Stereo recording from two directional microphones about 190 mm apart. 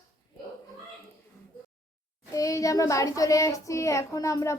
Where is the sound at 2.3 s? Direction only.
15° left (ahead or behind).